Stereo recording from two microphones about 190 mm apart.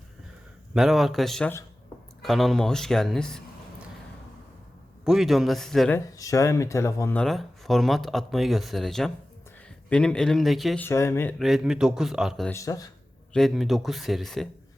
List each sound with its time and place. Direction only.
0.7 s speech: centre (ahead or behind)
5.0 s speech: centre (ahead or behind)
6.1 s speech: 15° left (ahead or behind); by 10.8 s centre (ahead or behind)
10.8 s speech: 15° left (ahead or behind)
11.3 s speech: centre (ahead or behind)
12.5 s speech: 15° left (ahead or behind)
13.3 s speech: centre (ahead or behind)